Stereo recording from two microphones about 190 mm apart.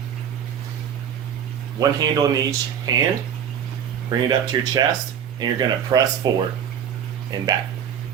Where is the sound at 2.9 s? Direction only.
20° right (ahead or behind).